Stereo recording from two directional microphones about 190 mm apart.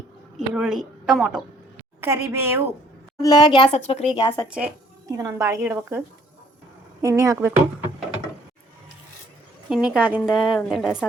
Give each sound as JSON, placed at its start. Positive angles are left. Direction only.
{"t": 0.3, "sound": "a woman's voice", "side_deg": -5}
{"t": 2.0, "sound": "a woman's voice", "side_deg": -15}
{"t": 3.2, "sound": "a woman's voice", "side_deg": 20}
{"t": 4.4, "sound": "a woman's voice", "side_deg": -5}
{"t": 5.0, "sound": "a woman's voice", "side_deg": -20}
{"t": 7.0, "sound": "a woman's voice", "side_deg": -15}
{"t": 9.6, "sound": "a woman's voice", "side_deg": -5}